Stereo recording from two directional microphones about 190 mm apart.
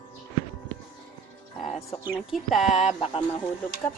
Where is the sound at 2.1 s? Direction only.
Centre (ahead or behind).